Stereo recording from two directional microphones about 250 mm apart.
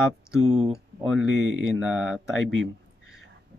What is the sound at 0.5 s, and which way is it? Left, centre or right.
Speech, right.